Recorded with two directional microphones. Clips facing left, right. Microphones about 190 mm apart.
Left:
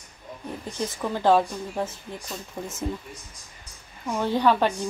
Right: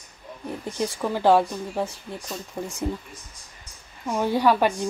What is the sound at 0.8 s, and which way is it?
Speech, 10° right (ahead or behind).